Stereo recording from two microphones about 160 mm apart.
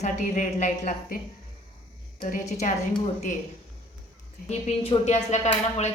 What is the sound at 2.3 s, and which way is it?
Speech, 50° left (ahead or behind).